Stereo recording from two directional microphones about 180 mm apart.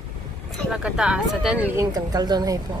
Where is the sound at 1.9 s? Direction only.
20° right (ahead or behind).